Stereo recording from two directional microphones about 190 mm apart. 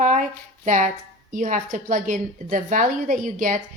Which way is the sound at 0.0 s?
40° right (ahead or behind).